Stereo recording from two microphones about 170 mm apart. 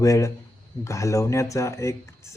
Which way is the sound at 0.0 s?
20° left (ahead or behind).